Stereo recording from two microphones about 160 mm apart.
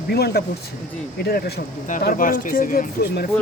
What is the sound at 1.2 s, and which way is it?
Speech, 75° left (ahead or behind).